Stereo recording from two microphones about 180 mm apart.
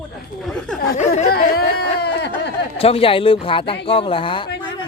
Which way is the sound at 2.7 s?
30° left (ahead or behind).